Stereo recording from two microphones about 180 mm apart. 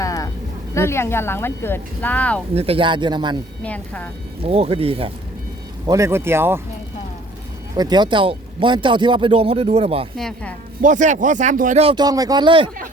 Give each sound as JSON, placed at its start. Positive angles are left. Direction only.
{"t": 0.0, "sound": "a sound", "side_deg": 20}
{"t": 0.7, "sound": "speech", "side_deg": 15}
{"t": 2.6, "sound": "speech", "side_deg": -30}
{"t": 3.6, "sound": "speech", "side_deg": 5}
{"t": 4.4, "sound": "speech", "side_deg": -35}
{"t": 5.8, "sound": "speech", "side_deg": -20}
{"t": 7.8, "sound": "speech", "side_deg": -25}
{"t": 10.2, "sound": "speech", "side_deg": 0}
{"t": 10.8, "sound": "speech", "side_deg": -45}
{"t": 11.8, "sound": "speech", "side_deg": -25}